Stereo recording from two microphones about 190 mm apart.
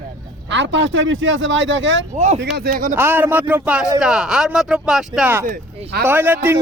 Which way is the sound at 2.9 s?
10° right (ahead or behind).